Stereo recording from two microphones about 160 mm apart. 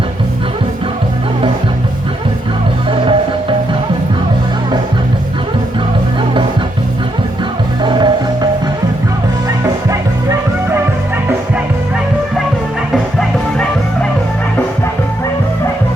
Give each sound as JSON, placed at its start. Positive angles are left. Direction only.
{"t": 2.9, "sound": "music", "side_deg": -35}
{"t": 7.8, "sound": "music", "side_deg": -30}
{"t": 9.9, "sound": "music", "side_deg": -15}
{"t": 12.9, "sound": "music", "side_deg": 5}